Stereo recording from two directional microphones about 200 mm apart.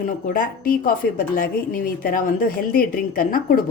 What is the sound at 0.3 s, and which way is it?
Speech, 45° left (ahead or behind).